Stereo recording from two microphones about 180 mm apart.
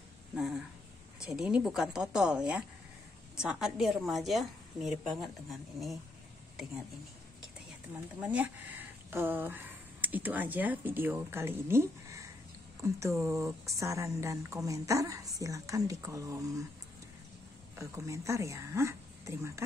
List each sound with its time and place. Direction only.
1.2 s a woman's voice: 5° right (ahead or behind)
8.2 s speech: 10° right (ahead or behind)
17.7 s speech: 15° right (ahead or behind)